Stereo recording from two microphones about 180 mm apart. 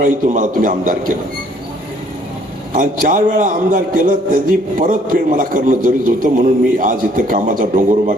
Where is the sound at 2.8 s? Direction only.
45° right (ahead or behind).